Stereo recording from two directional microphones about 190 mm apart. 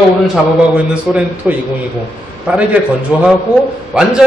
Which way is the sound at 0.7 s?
5° right (ahead or behind).